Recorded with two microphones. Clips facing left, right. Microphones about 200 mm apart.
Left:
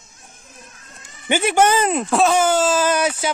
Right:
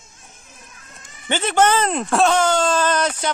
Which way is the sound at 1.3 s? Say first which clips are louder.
Left 1 dB; 10° left (ahead or behind).